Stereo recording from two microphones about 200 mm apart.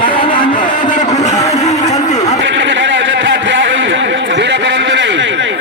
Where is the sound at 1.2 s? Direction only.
35° left (ahead or behind).